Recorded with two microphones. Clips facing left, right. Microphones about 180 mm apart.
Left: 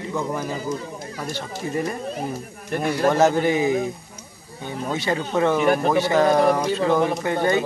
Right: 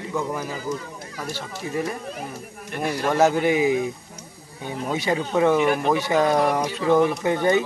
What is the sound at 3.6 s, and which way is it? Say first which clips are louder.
Speech: even; 40° left (ahead or behind).